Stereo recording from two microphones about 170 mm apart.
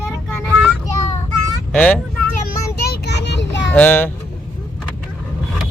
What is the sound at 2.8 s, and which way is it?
Child singing, 75° left (ahead or behind).